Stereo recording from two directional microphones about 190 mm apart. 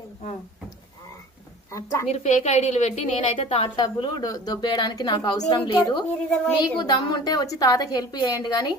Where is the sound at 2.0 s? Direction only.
35° left (ahead or behind).